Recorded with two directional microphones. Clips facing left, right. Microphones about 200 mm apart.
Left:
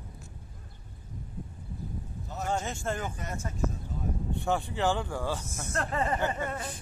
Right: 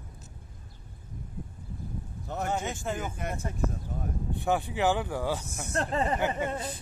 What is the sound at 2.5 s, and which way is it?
Speech, centre (ahead or behind).